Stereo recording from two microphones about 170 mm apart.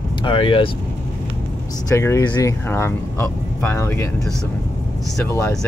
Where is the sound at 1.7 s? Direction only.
20° left (ahead or behind).